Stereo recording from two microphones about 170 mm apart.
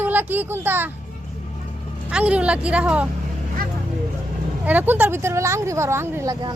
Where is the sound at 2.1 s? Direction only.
5° right (ahead or behind).